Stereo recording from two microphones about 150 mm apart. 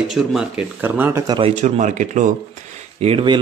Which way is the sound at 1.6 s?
50° right (ahead or behind).